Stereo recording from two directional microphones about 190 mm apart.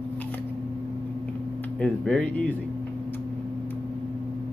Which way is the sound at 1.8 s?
5° left (ahead or behind).